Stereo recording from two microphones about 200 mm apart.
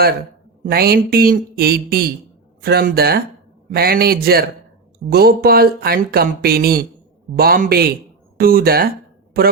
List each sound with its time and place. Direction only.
0.6 s speech: 50° right (ahead or behind)